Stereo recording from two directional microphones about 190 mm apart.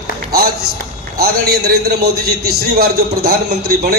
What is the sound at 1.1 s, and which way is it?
A man's voice, 55° right (ahead or behind).